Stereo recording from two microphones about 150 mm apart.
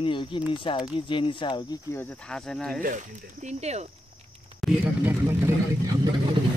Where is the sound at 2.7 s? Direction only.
60° right (ahead or behind).